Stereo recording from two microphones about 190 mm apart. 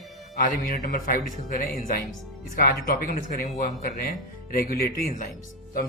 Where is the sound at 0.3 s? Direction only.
50° left (ahead or behind).